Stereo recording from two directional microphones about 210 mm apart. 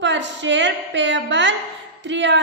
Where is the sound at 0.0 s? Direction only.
60° right (ahead or behind).